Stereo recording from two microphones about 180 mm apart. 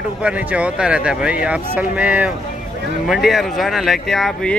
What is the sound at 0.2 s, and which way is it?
Speech, 5° right (ahead or behind).